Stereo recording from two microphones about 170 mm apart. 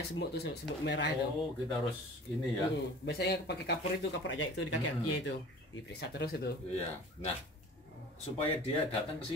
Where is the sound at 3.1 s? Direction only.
75° left (ahead or behind).